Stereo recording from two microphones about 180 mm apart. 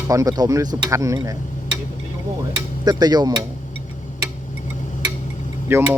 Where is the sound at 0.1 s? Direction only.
20° right (ahead or behind).